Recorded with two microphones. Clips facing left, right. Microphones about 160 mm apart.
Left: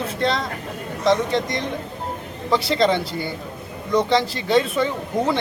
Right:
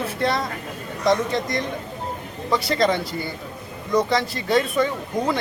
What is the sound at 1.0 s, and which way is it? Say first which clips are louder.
Speech: left 1 dB; 25° left (ahead or behind).